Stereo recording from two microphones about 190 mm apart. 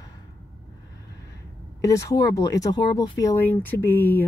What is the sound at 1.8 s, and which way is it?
Speech, 15° left (ahead or behind).